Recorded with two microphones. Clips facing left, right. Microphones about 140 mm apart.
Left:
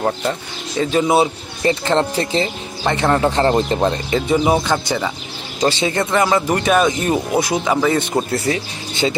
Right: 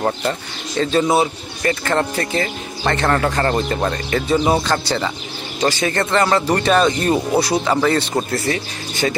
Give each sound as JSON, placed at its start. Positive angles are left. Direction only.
{"t": 0.0, "sound": "speech", "side_deg": 5}
{"t": 3.3, "sound": "speech", "side_deg": 25}
{"t": 5.9, "sound": "speech", "side_deg": 10}
{"t": 7.6, "sound": "speech", "side_deg": 5}